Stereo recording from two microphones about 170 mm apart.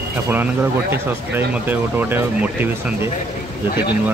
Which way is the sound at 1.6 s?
10° right (ahead or behind).